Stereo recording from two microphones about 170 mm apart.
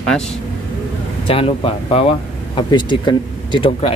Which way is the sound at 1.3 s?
35° left (ahead or behind).